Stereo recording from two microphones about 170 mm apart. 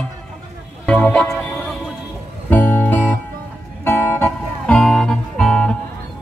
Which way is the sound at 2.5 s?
10° left (ahead or behind).